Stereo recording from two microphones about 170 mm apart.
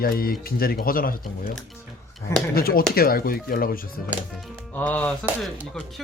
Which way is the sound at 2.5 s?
60° left (ahead or behind).